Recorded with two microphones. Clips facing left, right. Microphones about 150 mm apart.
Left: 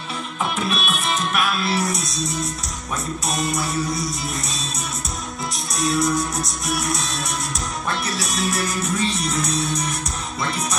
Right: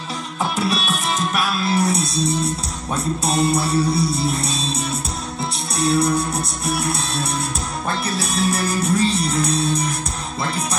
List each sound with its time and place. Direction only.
0.4 s music: 35° right (ahead or behind)
3.7 s music: 65° right (ahead or behind)
4.1 s music: 30° right (ahead or behind)
5.8 s music: 35° right (ahead or behind)